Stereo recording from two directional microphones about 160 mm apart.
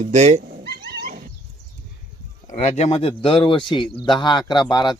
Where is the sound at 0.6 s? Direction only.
80° right.